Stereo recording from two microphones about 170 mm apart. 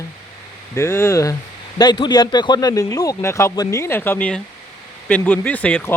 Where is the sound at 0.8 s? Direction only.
15° left (ahead or behind).